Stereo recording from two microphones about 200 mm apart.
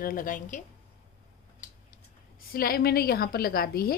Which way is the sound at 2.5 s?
50° left (ahead or behind).